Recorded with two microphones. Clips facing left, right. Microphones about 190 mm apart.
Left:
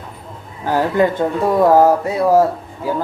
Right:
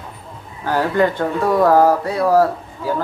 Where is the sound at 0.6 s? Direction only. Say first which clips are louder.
Left 1 dB; 15° left (ahead or behind).